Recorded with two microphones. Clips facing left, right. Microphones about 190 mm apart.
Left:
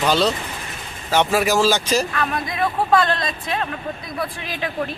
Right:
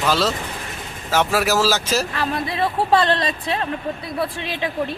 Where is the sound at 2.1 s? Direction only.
30° right (ahead or behind).